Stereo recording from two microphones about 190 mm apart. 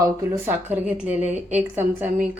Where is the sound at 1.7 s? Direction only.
10° right (ahead or behind).